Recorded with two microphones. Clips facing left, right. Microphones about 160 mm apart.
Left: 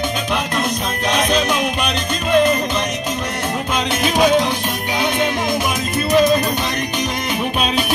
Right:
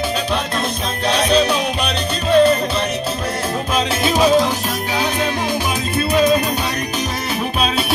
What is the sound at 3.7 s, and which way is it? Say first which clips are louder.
Music: right 1 dB; 35° right (ahead or behind).